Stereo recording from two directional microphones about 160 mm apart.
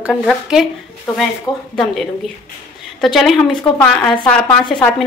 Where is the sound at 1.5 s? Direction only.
25° left (ahead or behind).